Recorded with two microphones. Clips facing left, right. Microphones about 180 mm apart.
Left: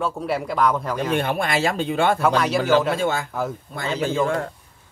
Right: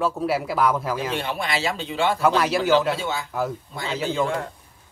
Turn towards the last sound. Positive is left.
turn(degrees=45)  # may be behind; listen again after turning